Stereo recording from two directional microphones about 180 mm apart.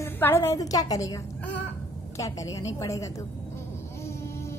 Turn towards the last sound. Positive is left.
turn(degrees=15)  # may be behind; listen again after turning